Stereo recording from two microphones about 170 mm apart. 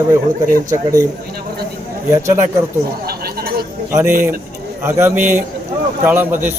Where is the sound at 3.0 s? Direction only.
65° right (ahead or behind).